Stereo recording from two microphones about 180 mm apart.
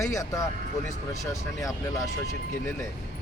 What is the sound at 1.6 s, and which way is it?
Speech, 20° left (ahead or behind).